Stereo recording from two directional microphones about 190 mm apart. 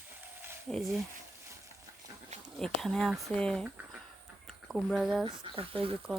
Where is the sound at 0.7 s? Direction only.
Centre (ahead or behind).